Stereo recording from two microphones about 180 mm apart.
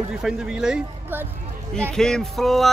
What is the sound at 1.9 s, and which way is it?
Speech, 5° left (ahead or behind).